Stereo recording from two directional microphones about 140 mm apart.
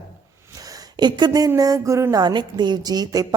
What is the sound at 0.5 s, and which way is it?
Speech, 25° right (ahead or behind).